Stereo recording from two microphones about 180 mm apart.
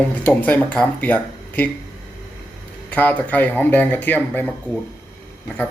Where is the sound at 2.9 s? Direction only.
10° left (ahead or behind).